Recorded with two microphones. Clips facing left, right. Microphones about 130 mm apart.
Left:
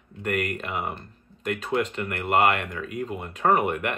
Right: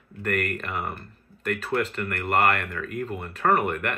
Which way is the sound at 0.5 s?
20° left (ahead or behind).